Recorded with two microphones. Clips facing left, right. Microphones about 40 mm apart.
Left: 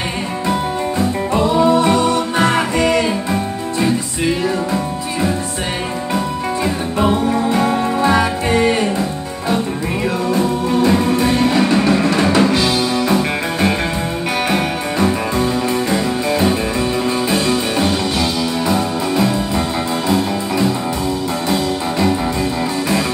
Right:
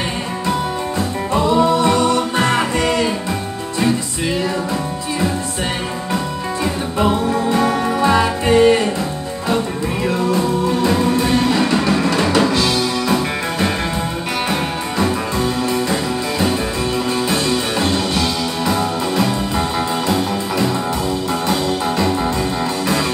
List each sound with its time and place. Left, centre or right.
1.6 s music: left
7.0 s music: centre
10.0 s music: left
10.9 s music: centre
15.3 s music: left
17.3 s music: centre
18.2 s music: centre